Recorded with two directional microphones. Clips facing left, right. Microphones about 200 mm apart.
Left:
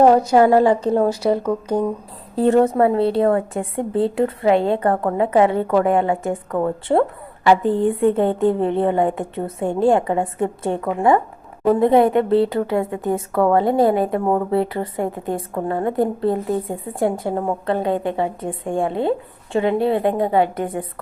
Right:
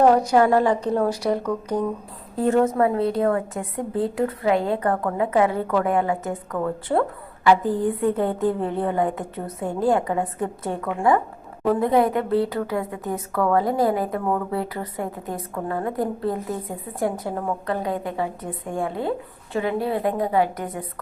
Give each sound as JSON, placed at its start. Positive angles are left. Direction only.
{"t": 0.0, "sound": "speech", "side_deg": 25}